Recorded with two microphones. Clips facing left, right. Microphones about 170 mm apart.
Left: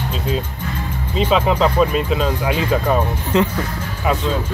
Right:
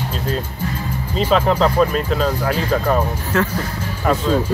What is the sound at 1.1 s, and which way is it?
Speech, centre (ahead or behind).